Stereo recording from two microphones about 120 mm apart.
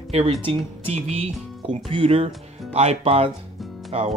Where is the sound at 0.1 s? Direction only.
60° right (ahead or behind).